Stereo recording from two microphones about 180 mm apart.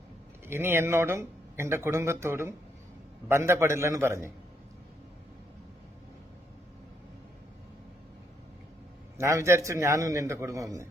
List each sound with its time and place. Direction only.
0.4 s speech: 15° right (ahead or behind)
9.1 s speech: 15° right (ahead or behind)